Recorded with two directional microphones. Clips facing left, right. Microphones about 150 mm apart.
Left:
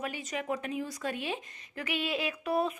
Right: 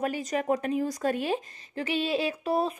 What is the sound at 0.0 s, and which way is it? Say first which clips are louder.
Speech: right 7 dB; 40° right (ahead or behind).